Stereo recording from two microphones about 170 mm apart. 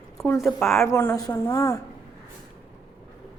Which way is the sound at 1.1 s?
20° left (ahead or behind).